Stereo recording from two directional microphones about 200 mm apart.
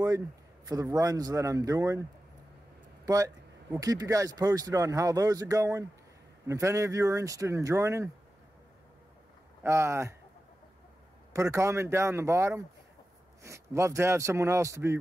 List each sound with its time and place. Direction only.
0.7 s speech: 15° right (ahead or behind)
3.8 s speech: 15° right (ahead or behind)
9.6 s speech: 15° right (ahead or behind)
11.3 s speech: 15° right (ahead or behind)